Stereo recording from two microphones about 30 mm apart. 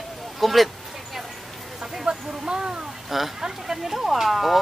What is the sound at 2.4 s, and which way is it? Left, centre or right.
Speech, right.